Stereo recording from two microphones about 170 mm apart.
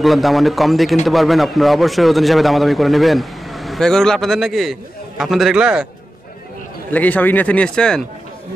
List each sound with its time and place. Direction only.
0.0 s a man's voice: centre (ahead or behind)
6.9 s speech: 10° left (ahead or behind)